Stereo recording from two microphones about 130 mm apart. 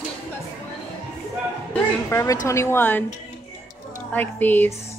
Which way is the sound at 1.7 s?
20° left (ahead or behind).